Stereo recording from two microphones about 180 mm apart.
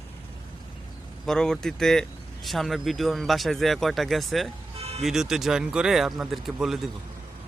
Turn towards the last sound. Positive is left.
turn(degrees=0)  # may be behind; listen again after turning